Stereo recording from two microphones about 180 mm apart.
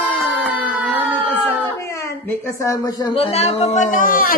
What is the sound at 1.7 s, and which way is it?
A woman's voice, 15° left (ahead or behind).